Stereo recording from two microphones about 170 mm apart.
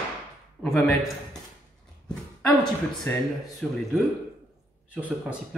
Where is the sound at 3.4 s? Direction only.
Centre (ahead or behind).